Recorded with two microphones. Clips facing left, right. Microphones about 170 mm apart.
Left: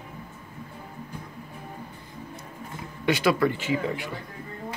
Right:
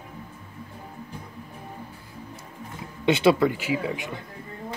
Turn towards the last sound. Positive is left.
turn(degrees=-20)  # may be behind; listen again after turning